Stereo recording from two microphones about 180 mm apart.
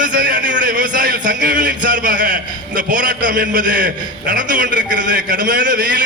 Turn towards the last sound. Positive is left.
turn(degrees=-50)  # may be behind; listen again after turning